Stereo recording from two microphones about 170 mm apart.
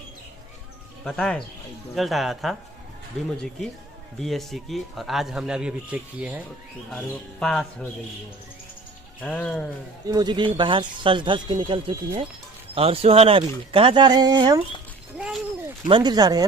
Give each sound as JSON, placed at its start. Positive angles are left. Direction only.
{"t": 1.0, "sound": "a man's voice", "side_deg": 5}
{"t": 4.2, "sound": "a man's voice", "side_deg": 0}
{"t": 6.9, "sound": "a man's voice", "side_deg": 5}
{"t": 9.2, "sound": "speech", "side_deg": 5}
{"t": 10.0, "sound": "speech", "side_deg": -25}
{"t": 15.1, "sound": "a sound", "side_deg": -5}
{"t": 15.9, "sound": "speech", "side_deg": -25}